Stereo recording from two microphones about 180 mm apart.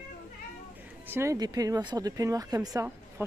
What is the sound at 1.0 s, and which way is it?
Speech, 15° right (ahead or behind).